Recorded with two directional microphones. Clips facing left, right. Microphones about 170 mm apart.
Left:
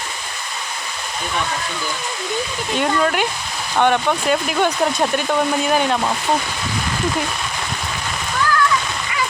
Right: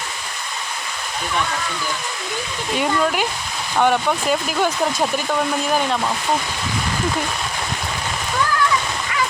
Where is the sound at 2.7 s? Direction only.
Centre (ahead or behind).